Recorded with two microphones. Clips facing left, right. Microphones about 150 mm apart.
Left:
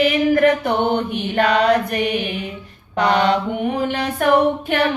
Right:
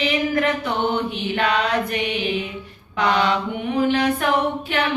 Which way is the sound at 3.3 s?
40° left (ahead or behind).